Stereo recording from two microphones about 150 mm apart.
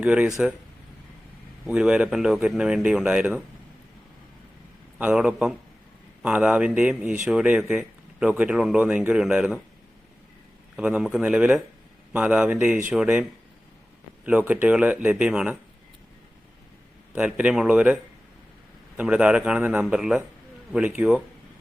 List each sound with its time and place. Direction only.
0.0 s speech: 10° right (ahead or behind)
1.6 s speech: 5° right (ahead or behind)
4.9 s speech: 10° right (ahead or behind)
10.8 s speech: 5° right (ahead or behind)
14.3 s speech: 10° right (ahead or behind)
17.1 s speech: 10° right (ahead or behind)